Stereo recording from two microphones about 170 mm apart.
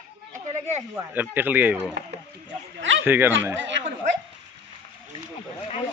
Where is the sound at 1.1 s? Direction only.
10° right (ahead or behind).